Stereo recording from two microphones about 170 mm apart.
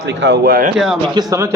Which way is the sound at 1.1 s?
20° right (ahead or behind).